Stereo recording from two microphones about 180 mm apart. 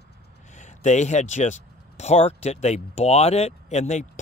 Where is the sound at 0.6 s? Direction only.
40° left (ahead or behind).